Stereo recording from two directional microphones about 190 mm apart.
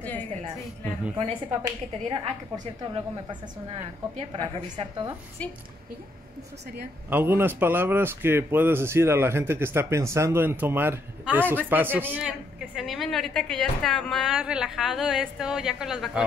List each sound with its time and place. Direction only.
0.0 s music: 10° left (ahead or behind)
1.1 s a woman's voice: 25° right (ahead or behind)
5.4 s a woman's voice: 5° left (ahead or behind)
7.1 s speech: 10° right (ahead or behind)